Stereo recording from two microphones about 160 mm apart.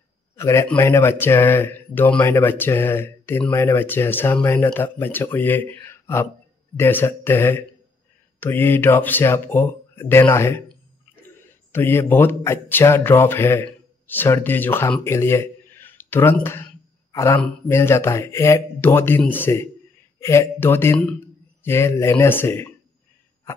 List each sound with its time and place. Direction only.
0.4 s a man's voice: 15° left (ahead or behind)
11.7 s speech: 15° left (ahead or behind)